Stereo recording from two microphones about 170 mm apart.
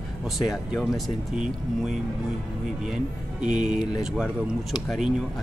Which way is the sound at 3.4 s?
5° right (ahead or behind).